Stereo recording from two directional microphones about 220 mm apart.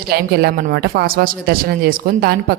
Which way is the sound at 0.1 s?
45° right (ahead or behind).